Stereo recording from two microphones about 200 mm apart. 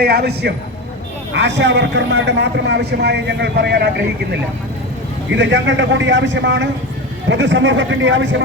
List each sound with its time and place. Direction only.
0.0 s a man's voice: 50° right (ahead or behind)
5.3 s speech: 65° right (ahead or behind)